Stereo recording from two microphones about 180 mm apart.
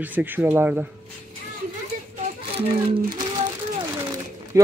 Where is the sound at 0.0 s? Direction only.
10° right (ahead or behind).